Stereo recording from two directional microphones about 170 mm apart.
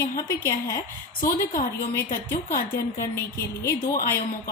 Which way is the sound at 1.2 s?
55° left (ahead or behind).